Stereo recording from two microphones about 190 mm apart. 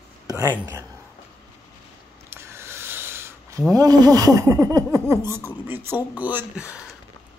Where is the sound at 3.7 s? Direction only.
20° right (ahead or behind).